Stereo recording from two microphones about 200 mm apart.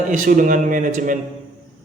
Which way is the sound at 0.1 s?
40° right (ahead or behind).